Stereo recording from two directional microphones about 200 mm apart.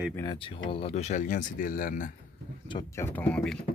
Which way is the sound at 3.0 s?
10° left (ahead or behind).